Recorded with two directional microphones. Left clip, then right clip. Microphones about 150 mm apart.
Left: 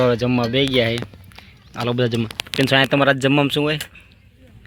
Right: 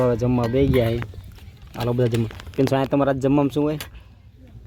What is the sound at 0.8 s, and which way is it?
Speech, 10° right (ahead or behind).